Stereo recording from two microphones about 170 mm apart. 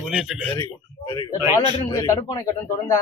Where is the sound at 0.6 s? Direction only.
25° left (ahead or behind).